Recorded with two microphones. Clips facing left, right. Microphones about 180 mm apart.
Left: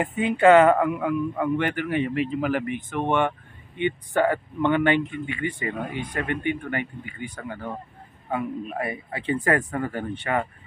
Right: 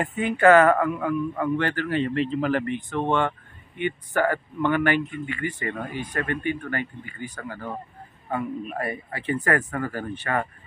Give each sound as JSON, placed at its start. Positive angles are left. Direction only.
{"t": 0.2, "sound": "speech", "side_deg": 20}
{"t": 8.7, "sound": "speech", "side_deg": 20}
{"t": 10.2, "sound": "speech", "side_deg": 10}